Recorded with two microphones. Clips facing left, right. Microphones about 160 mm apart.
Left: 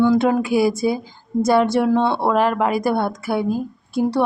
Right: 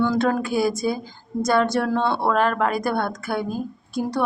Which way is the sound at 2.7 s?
25° left (ahead or behind).